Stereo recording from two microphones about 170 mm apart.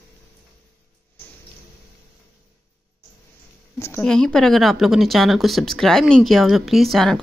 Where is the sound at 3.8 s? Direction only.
15° left (ahead or behind).